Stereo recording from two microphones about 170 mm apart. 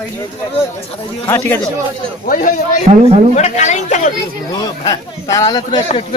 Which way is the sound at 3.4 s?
45° left (ahead or behind).